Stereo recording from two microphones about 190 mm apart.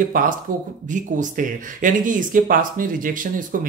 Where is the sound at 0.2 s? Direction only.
45° right (ahead or behind).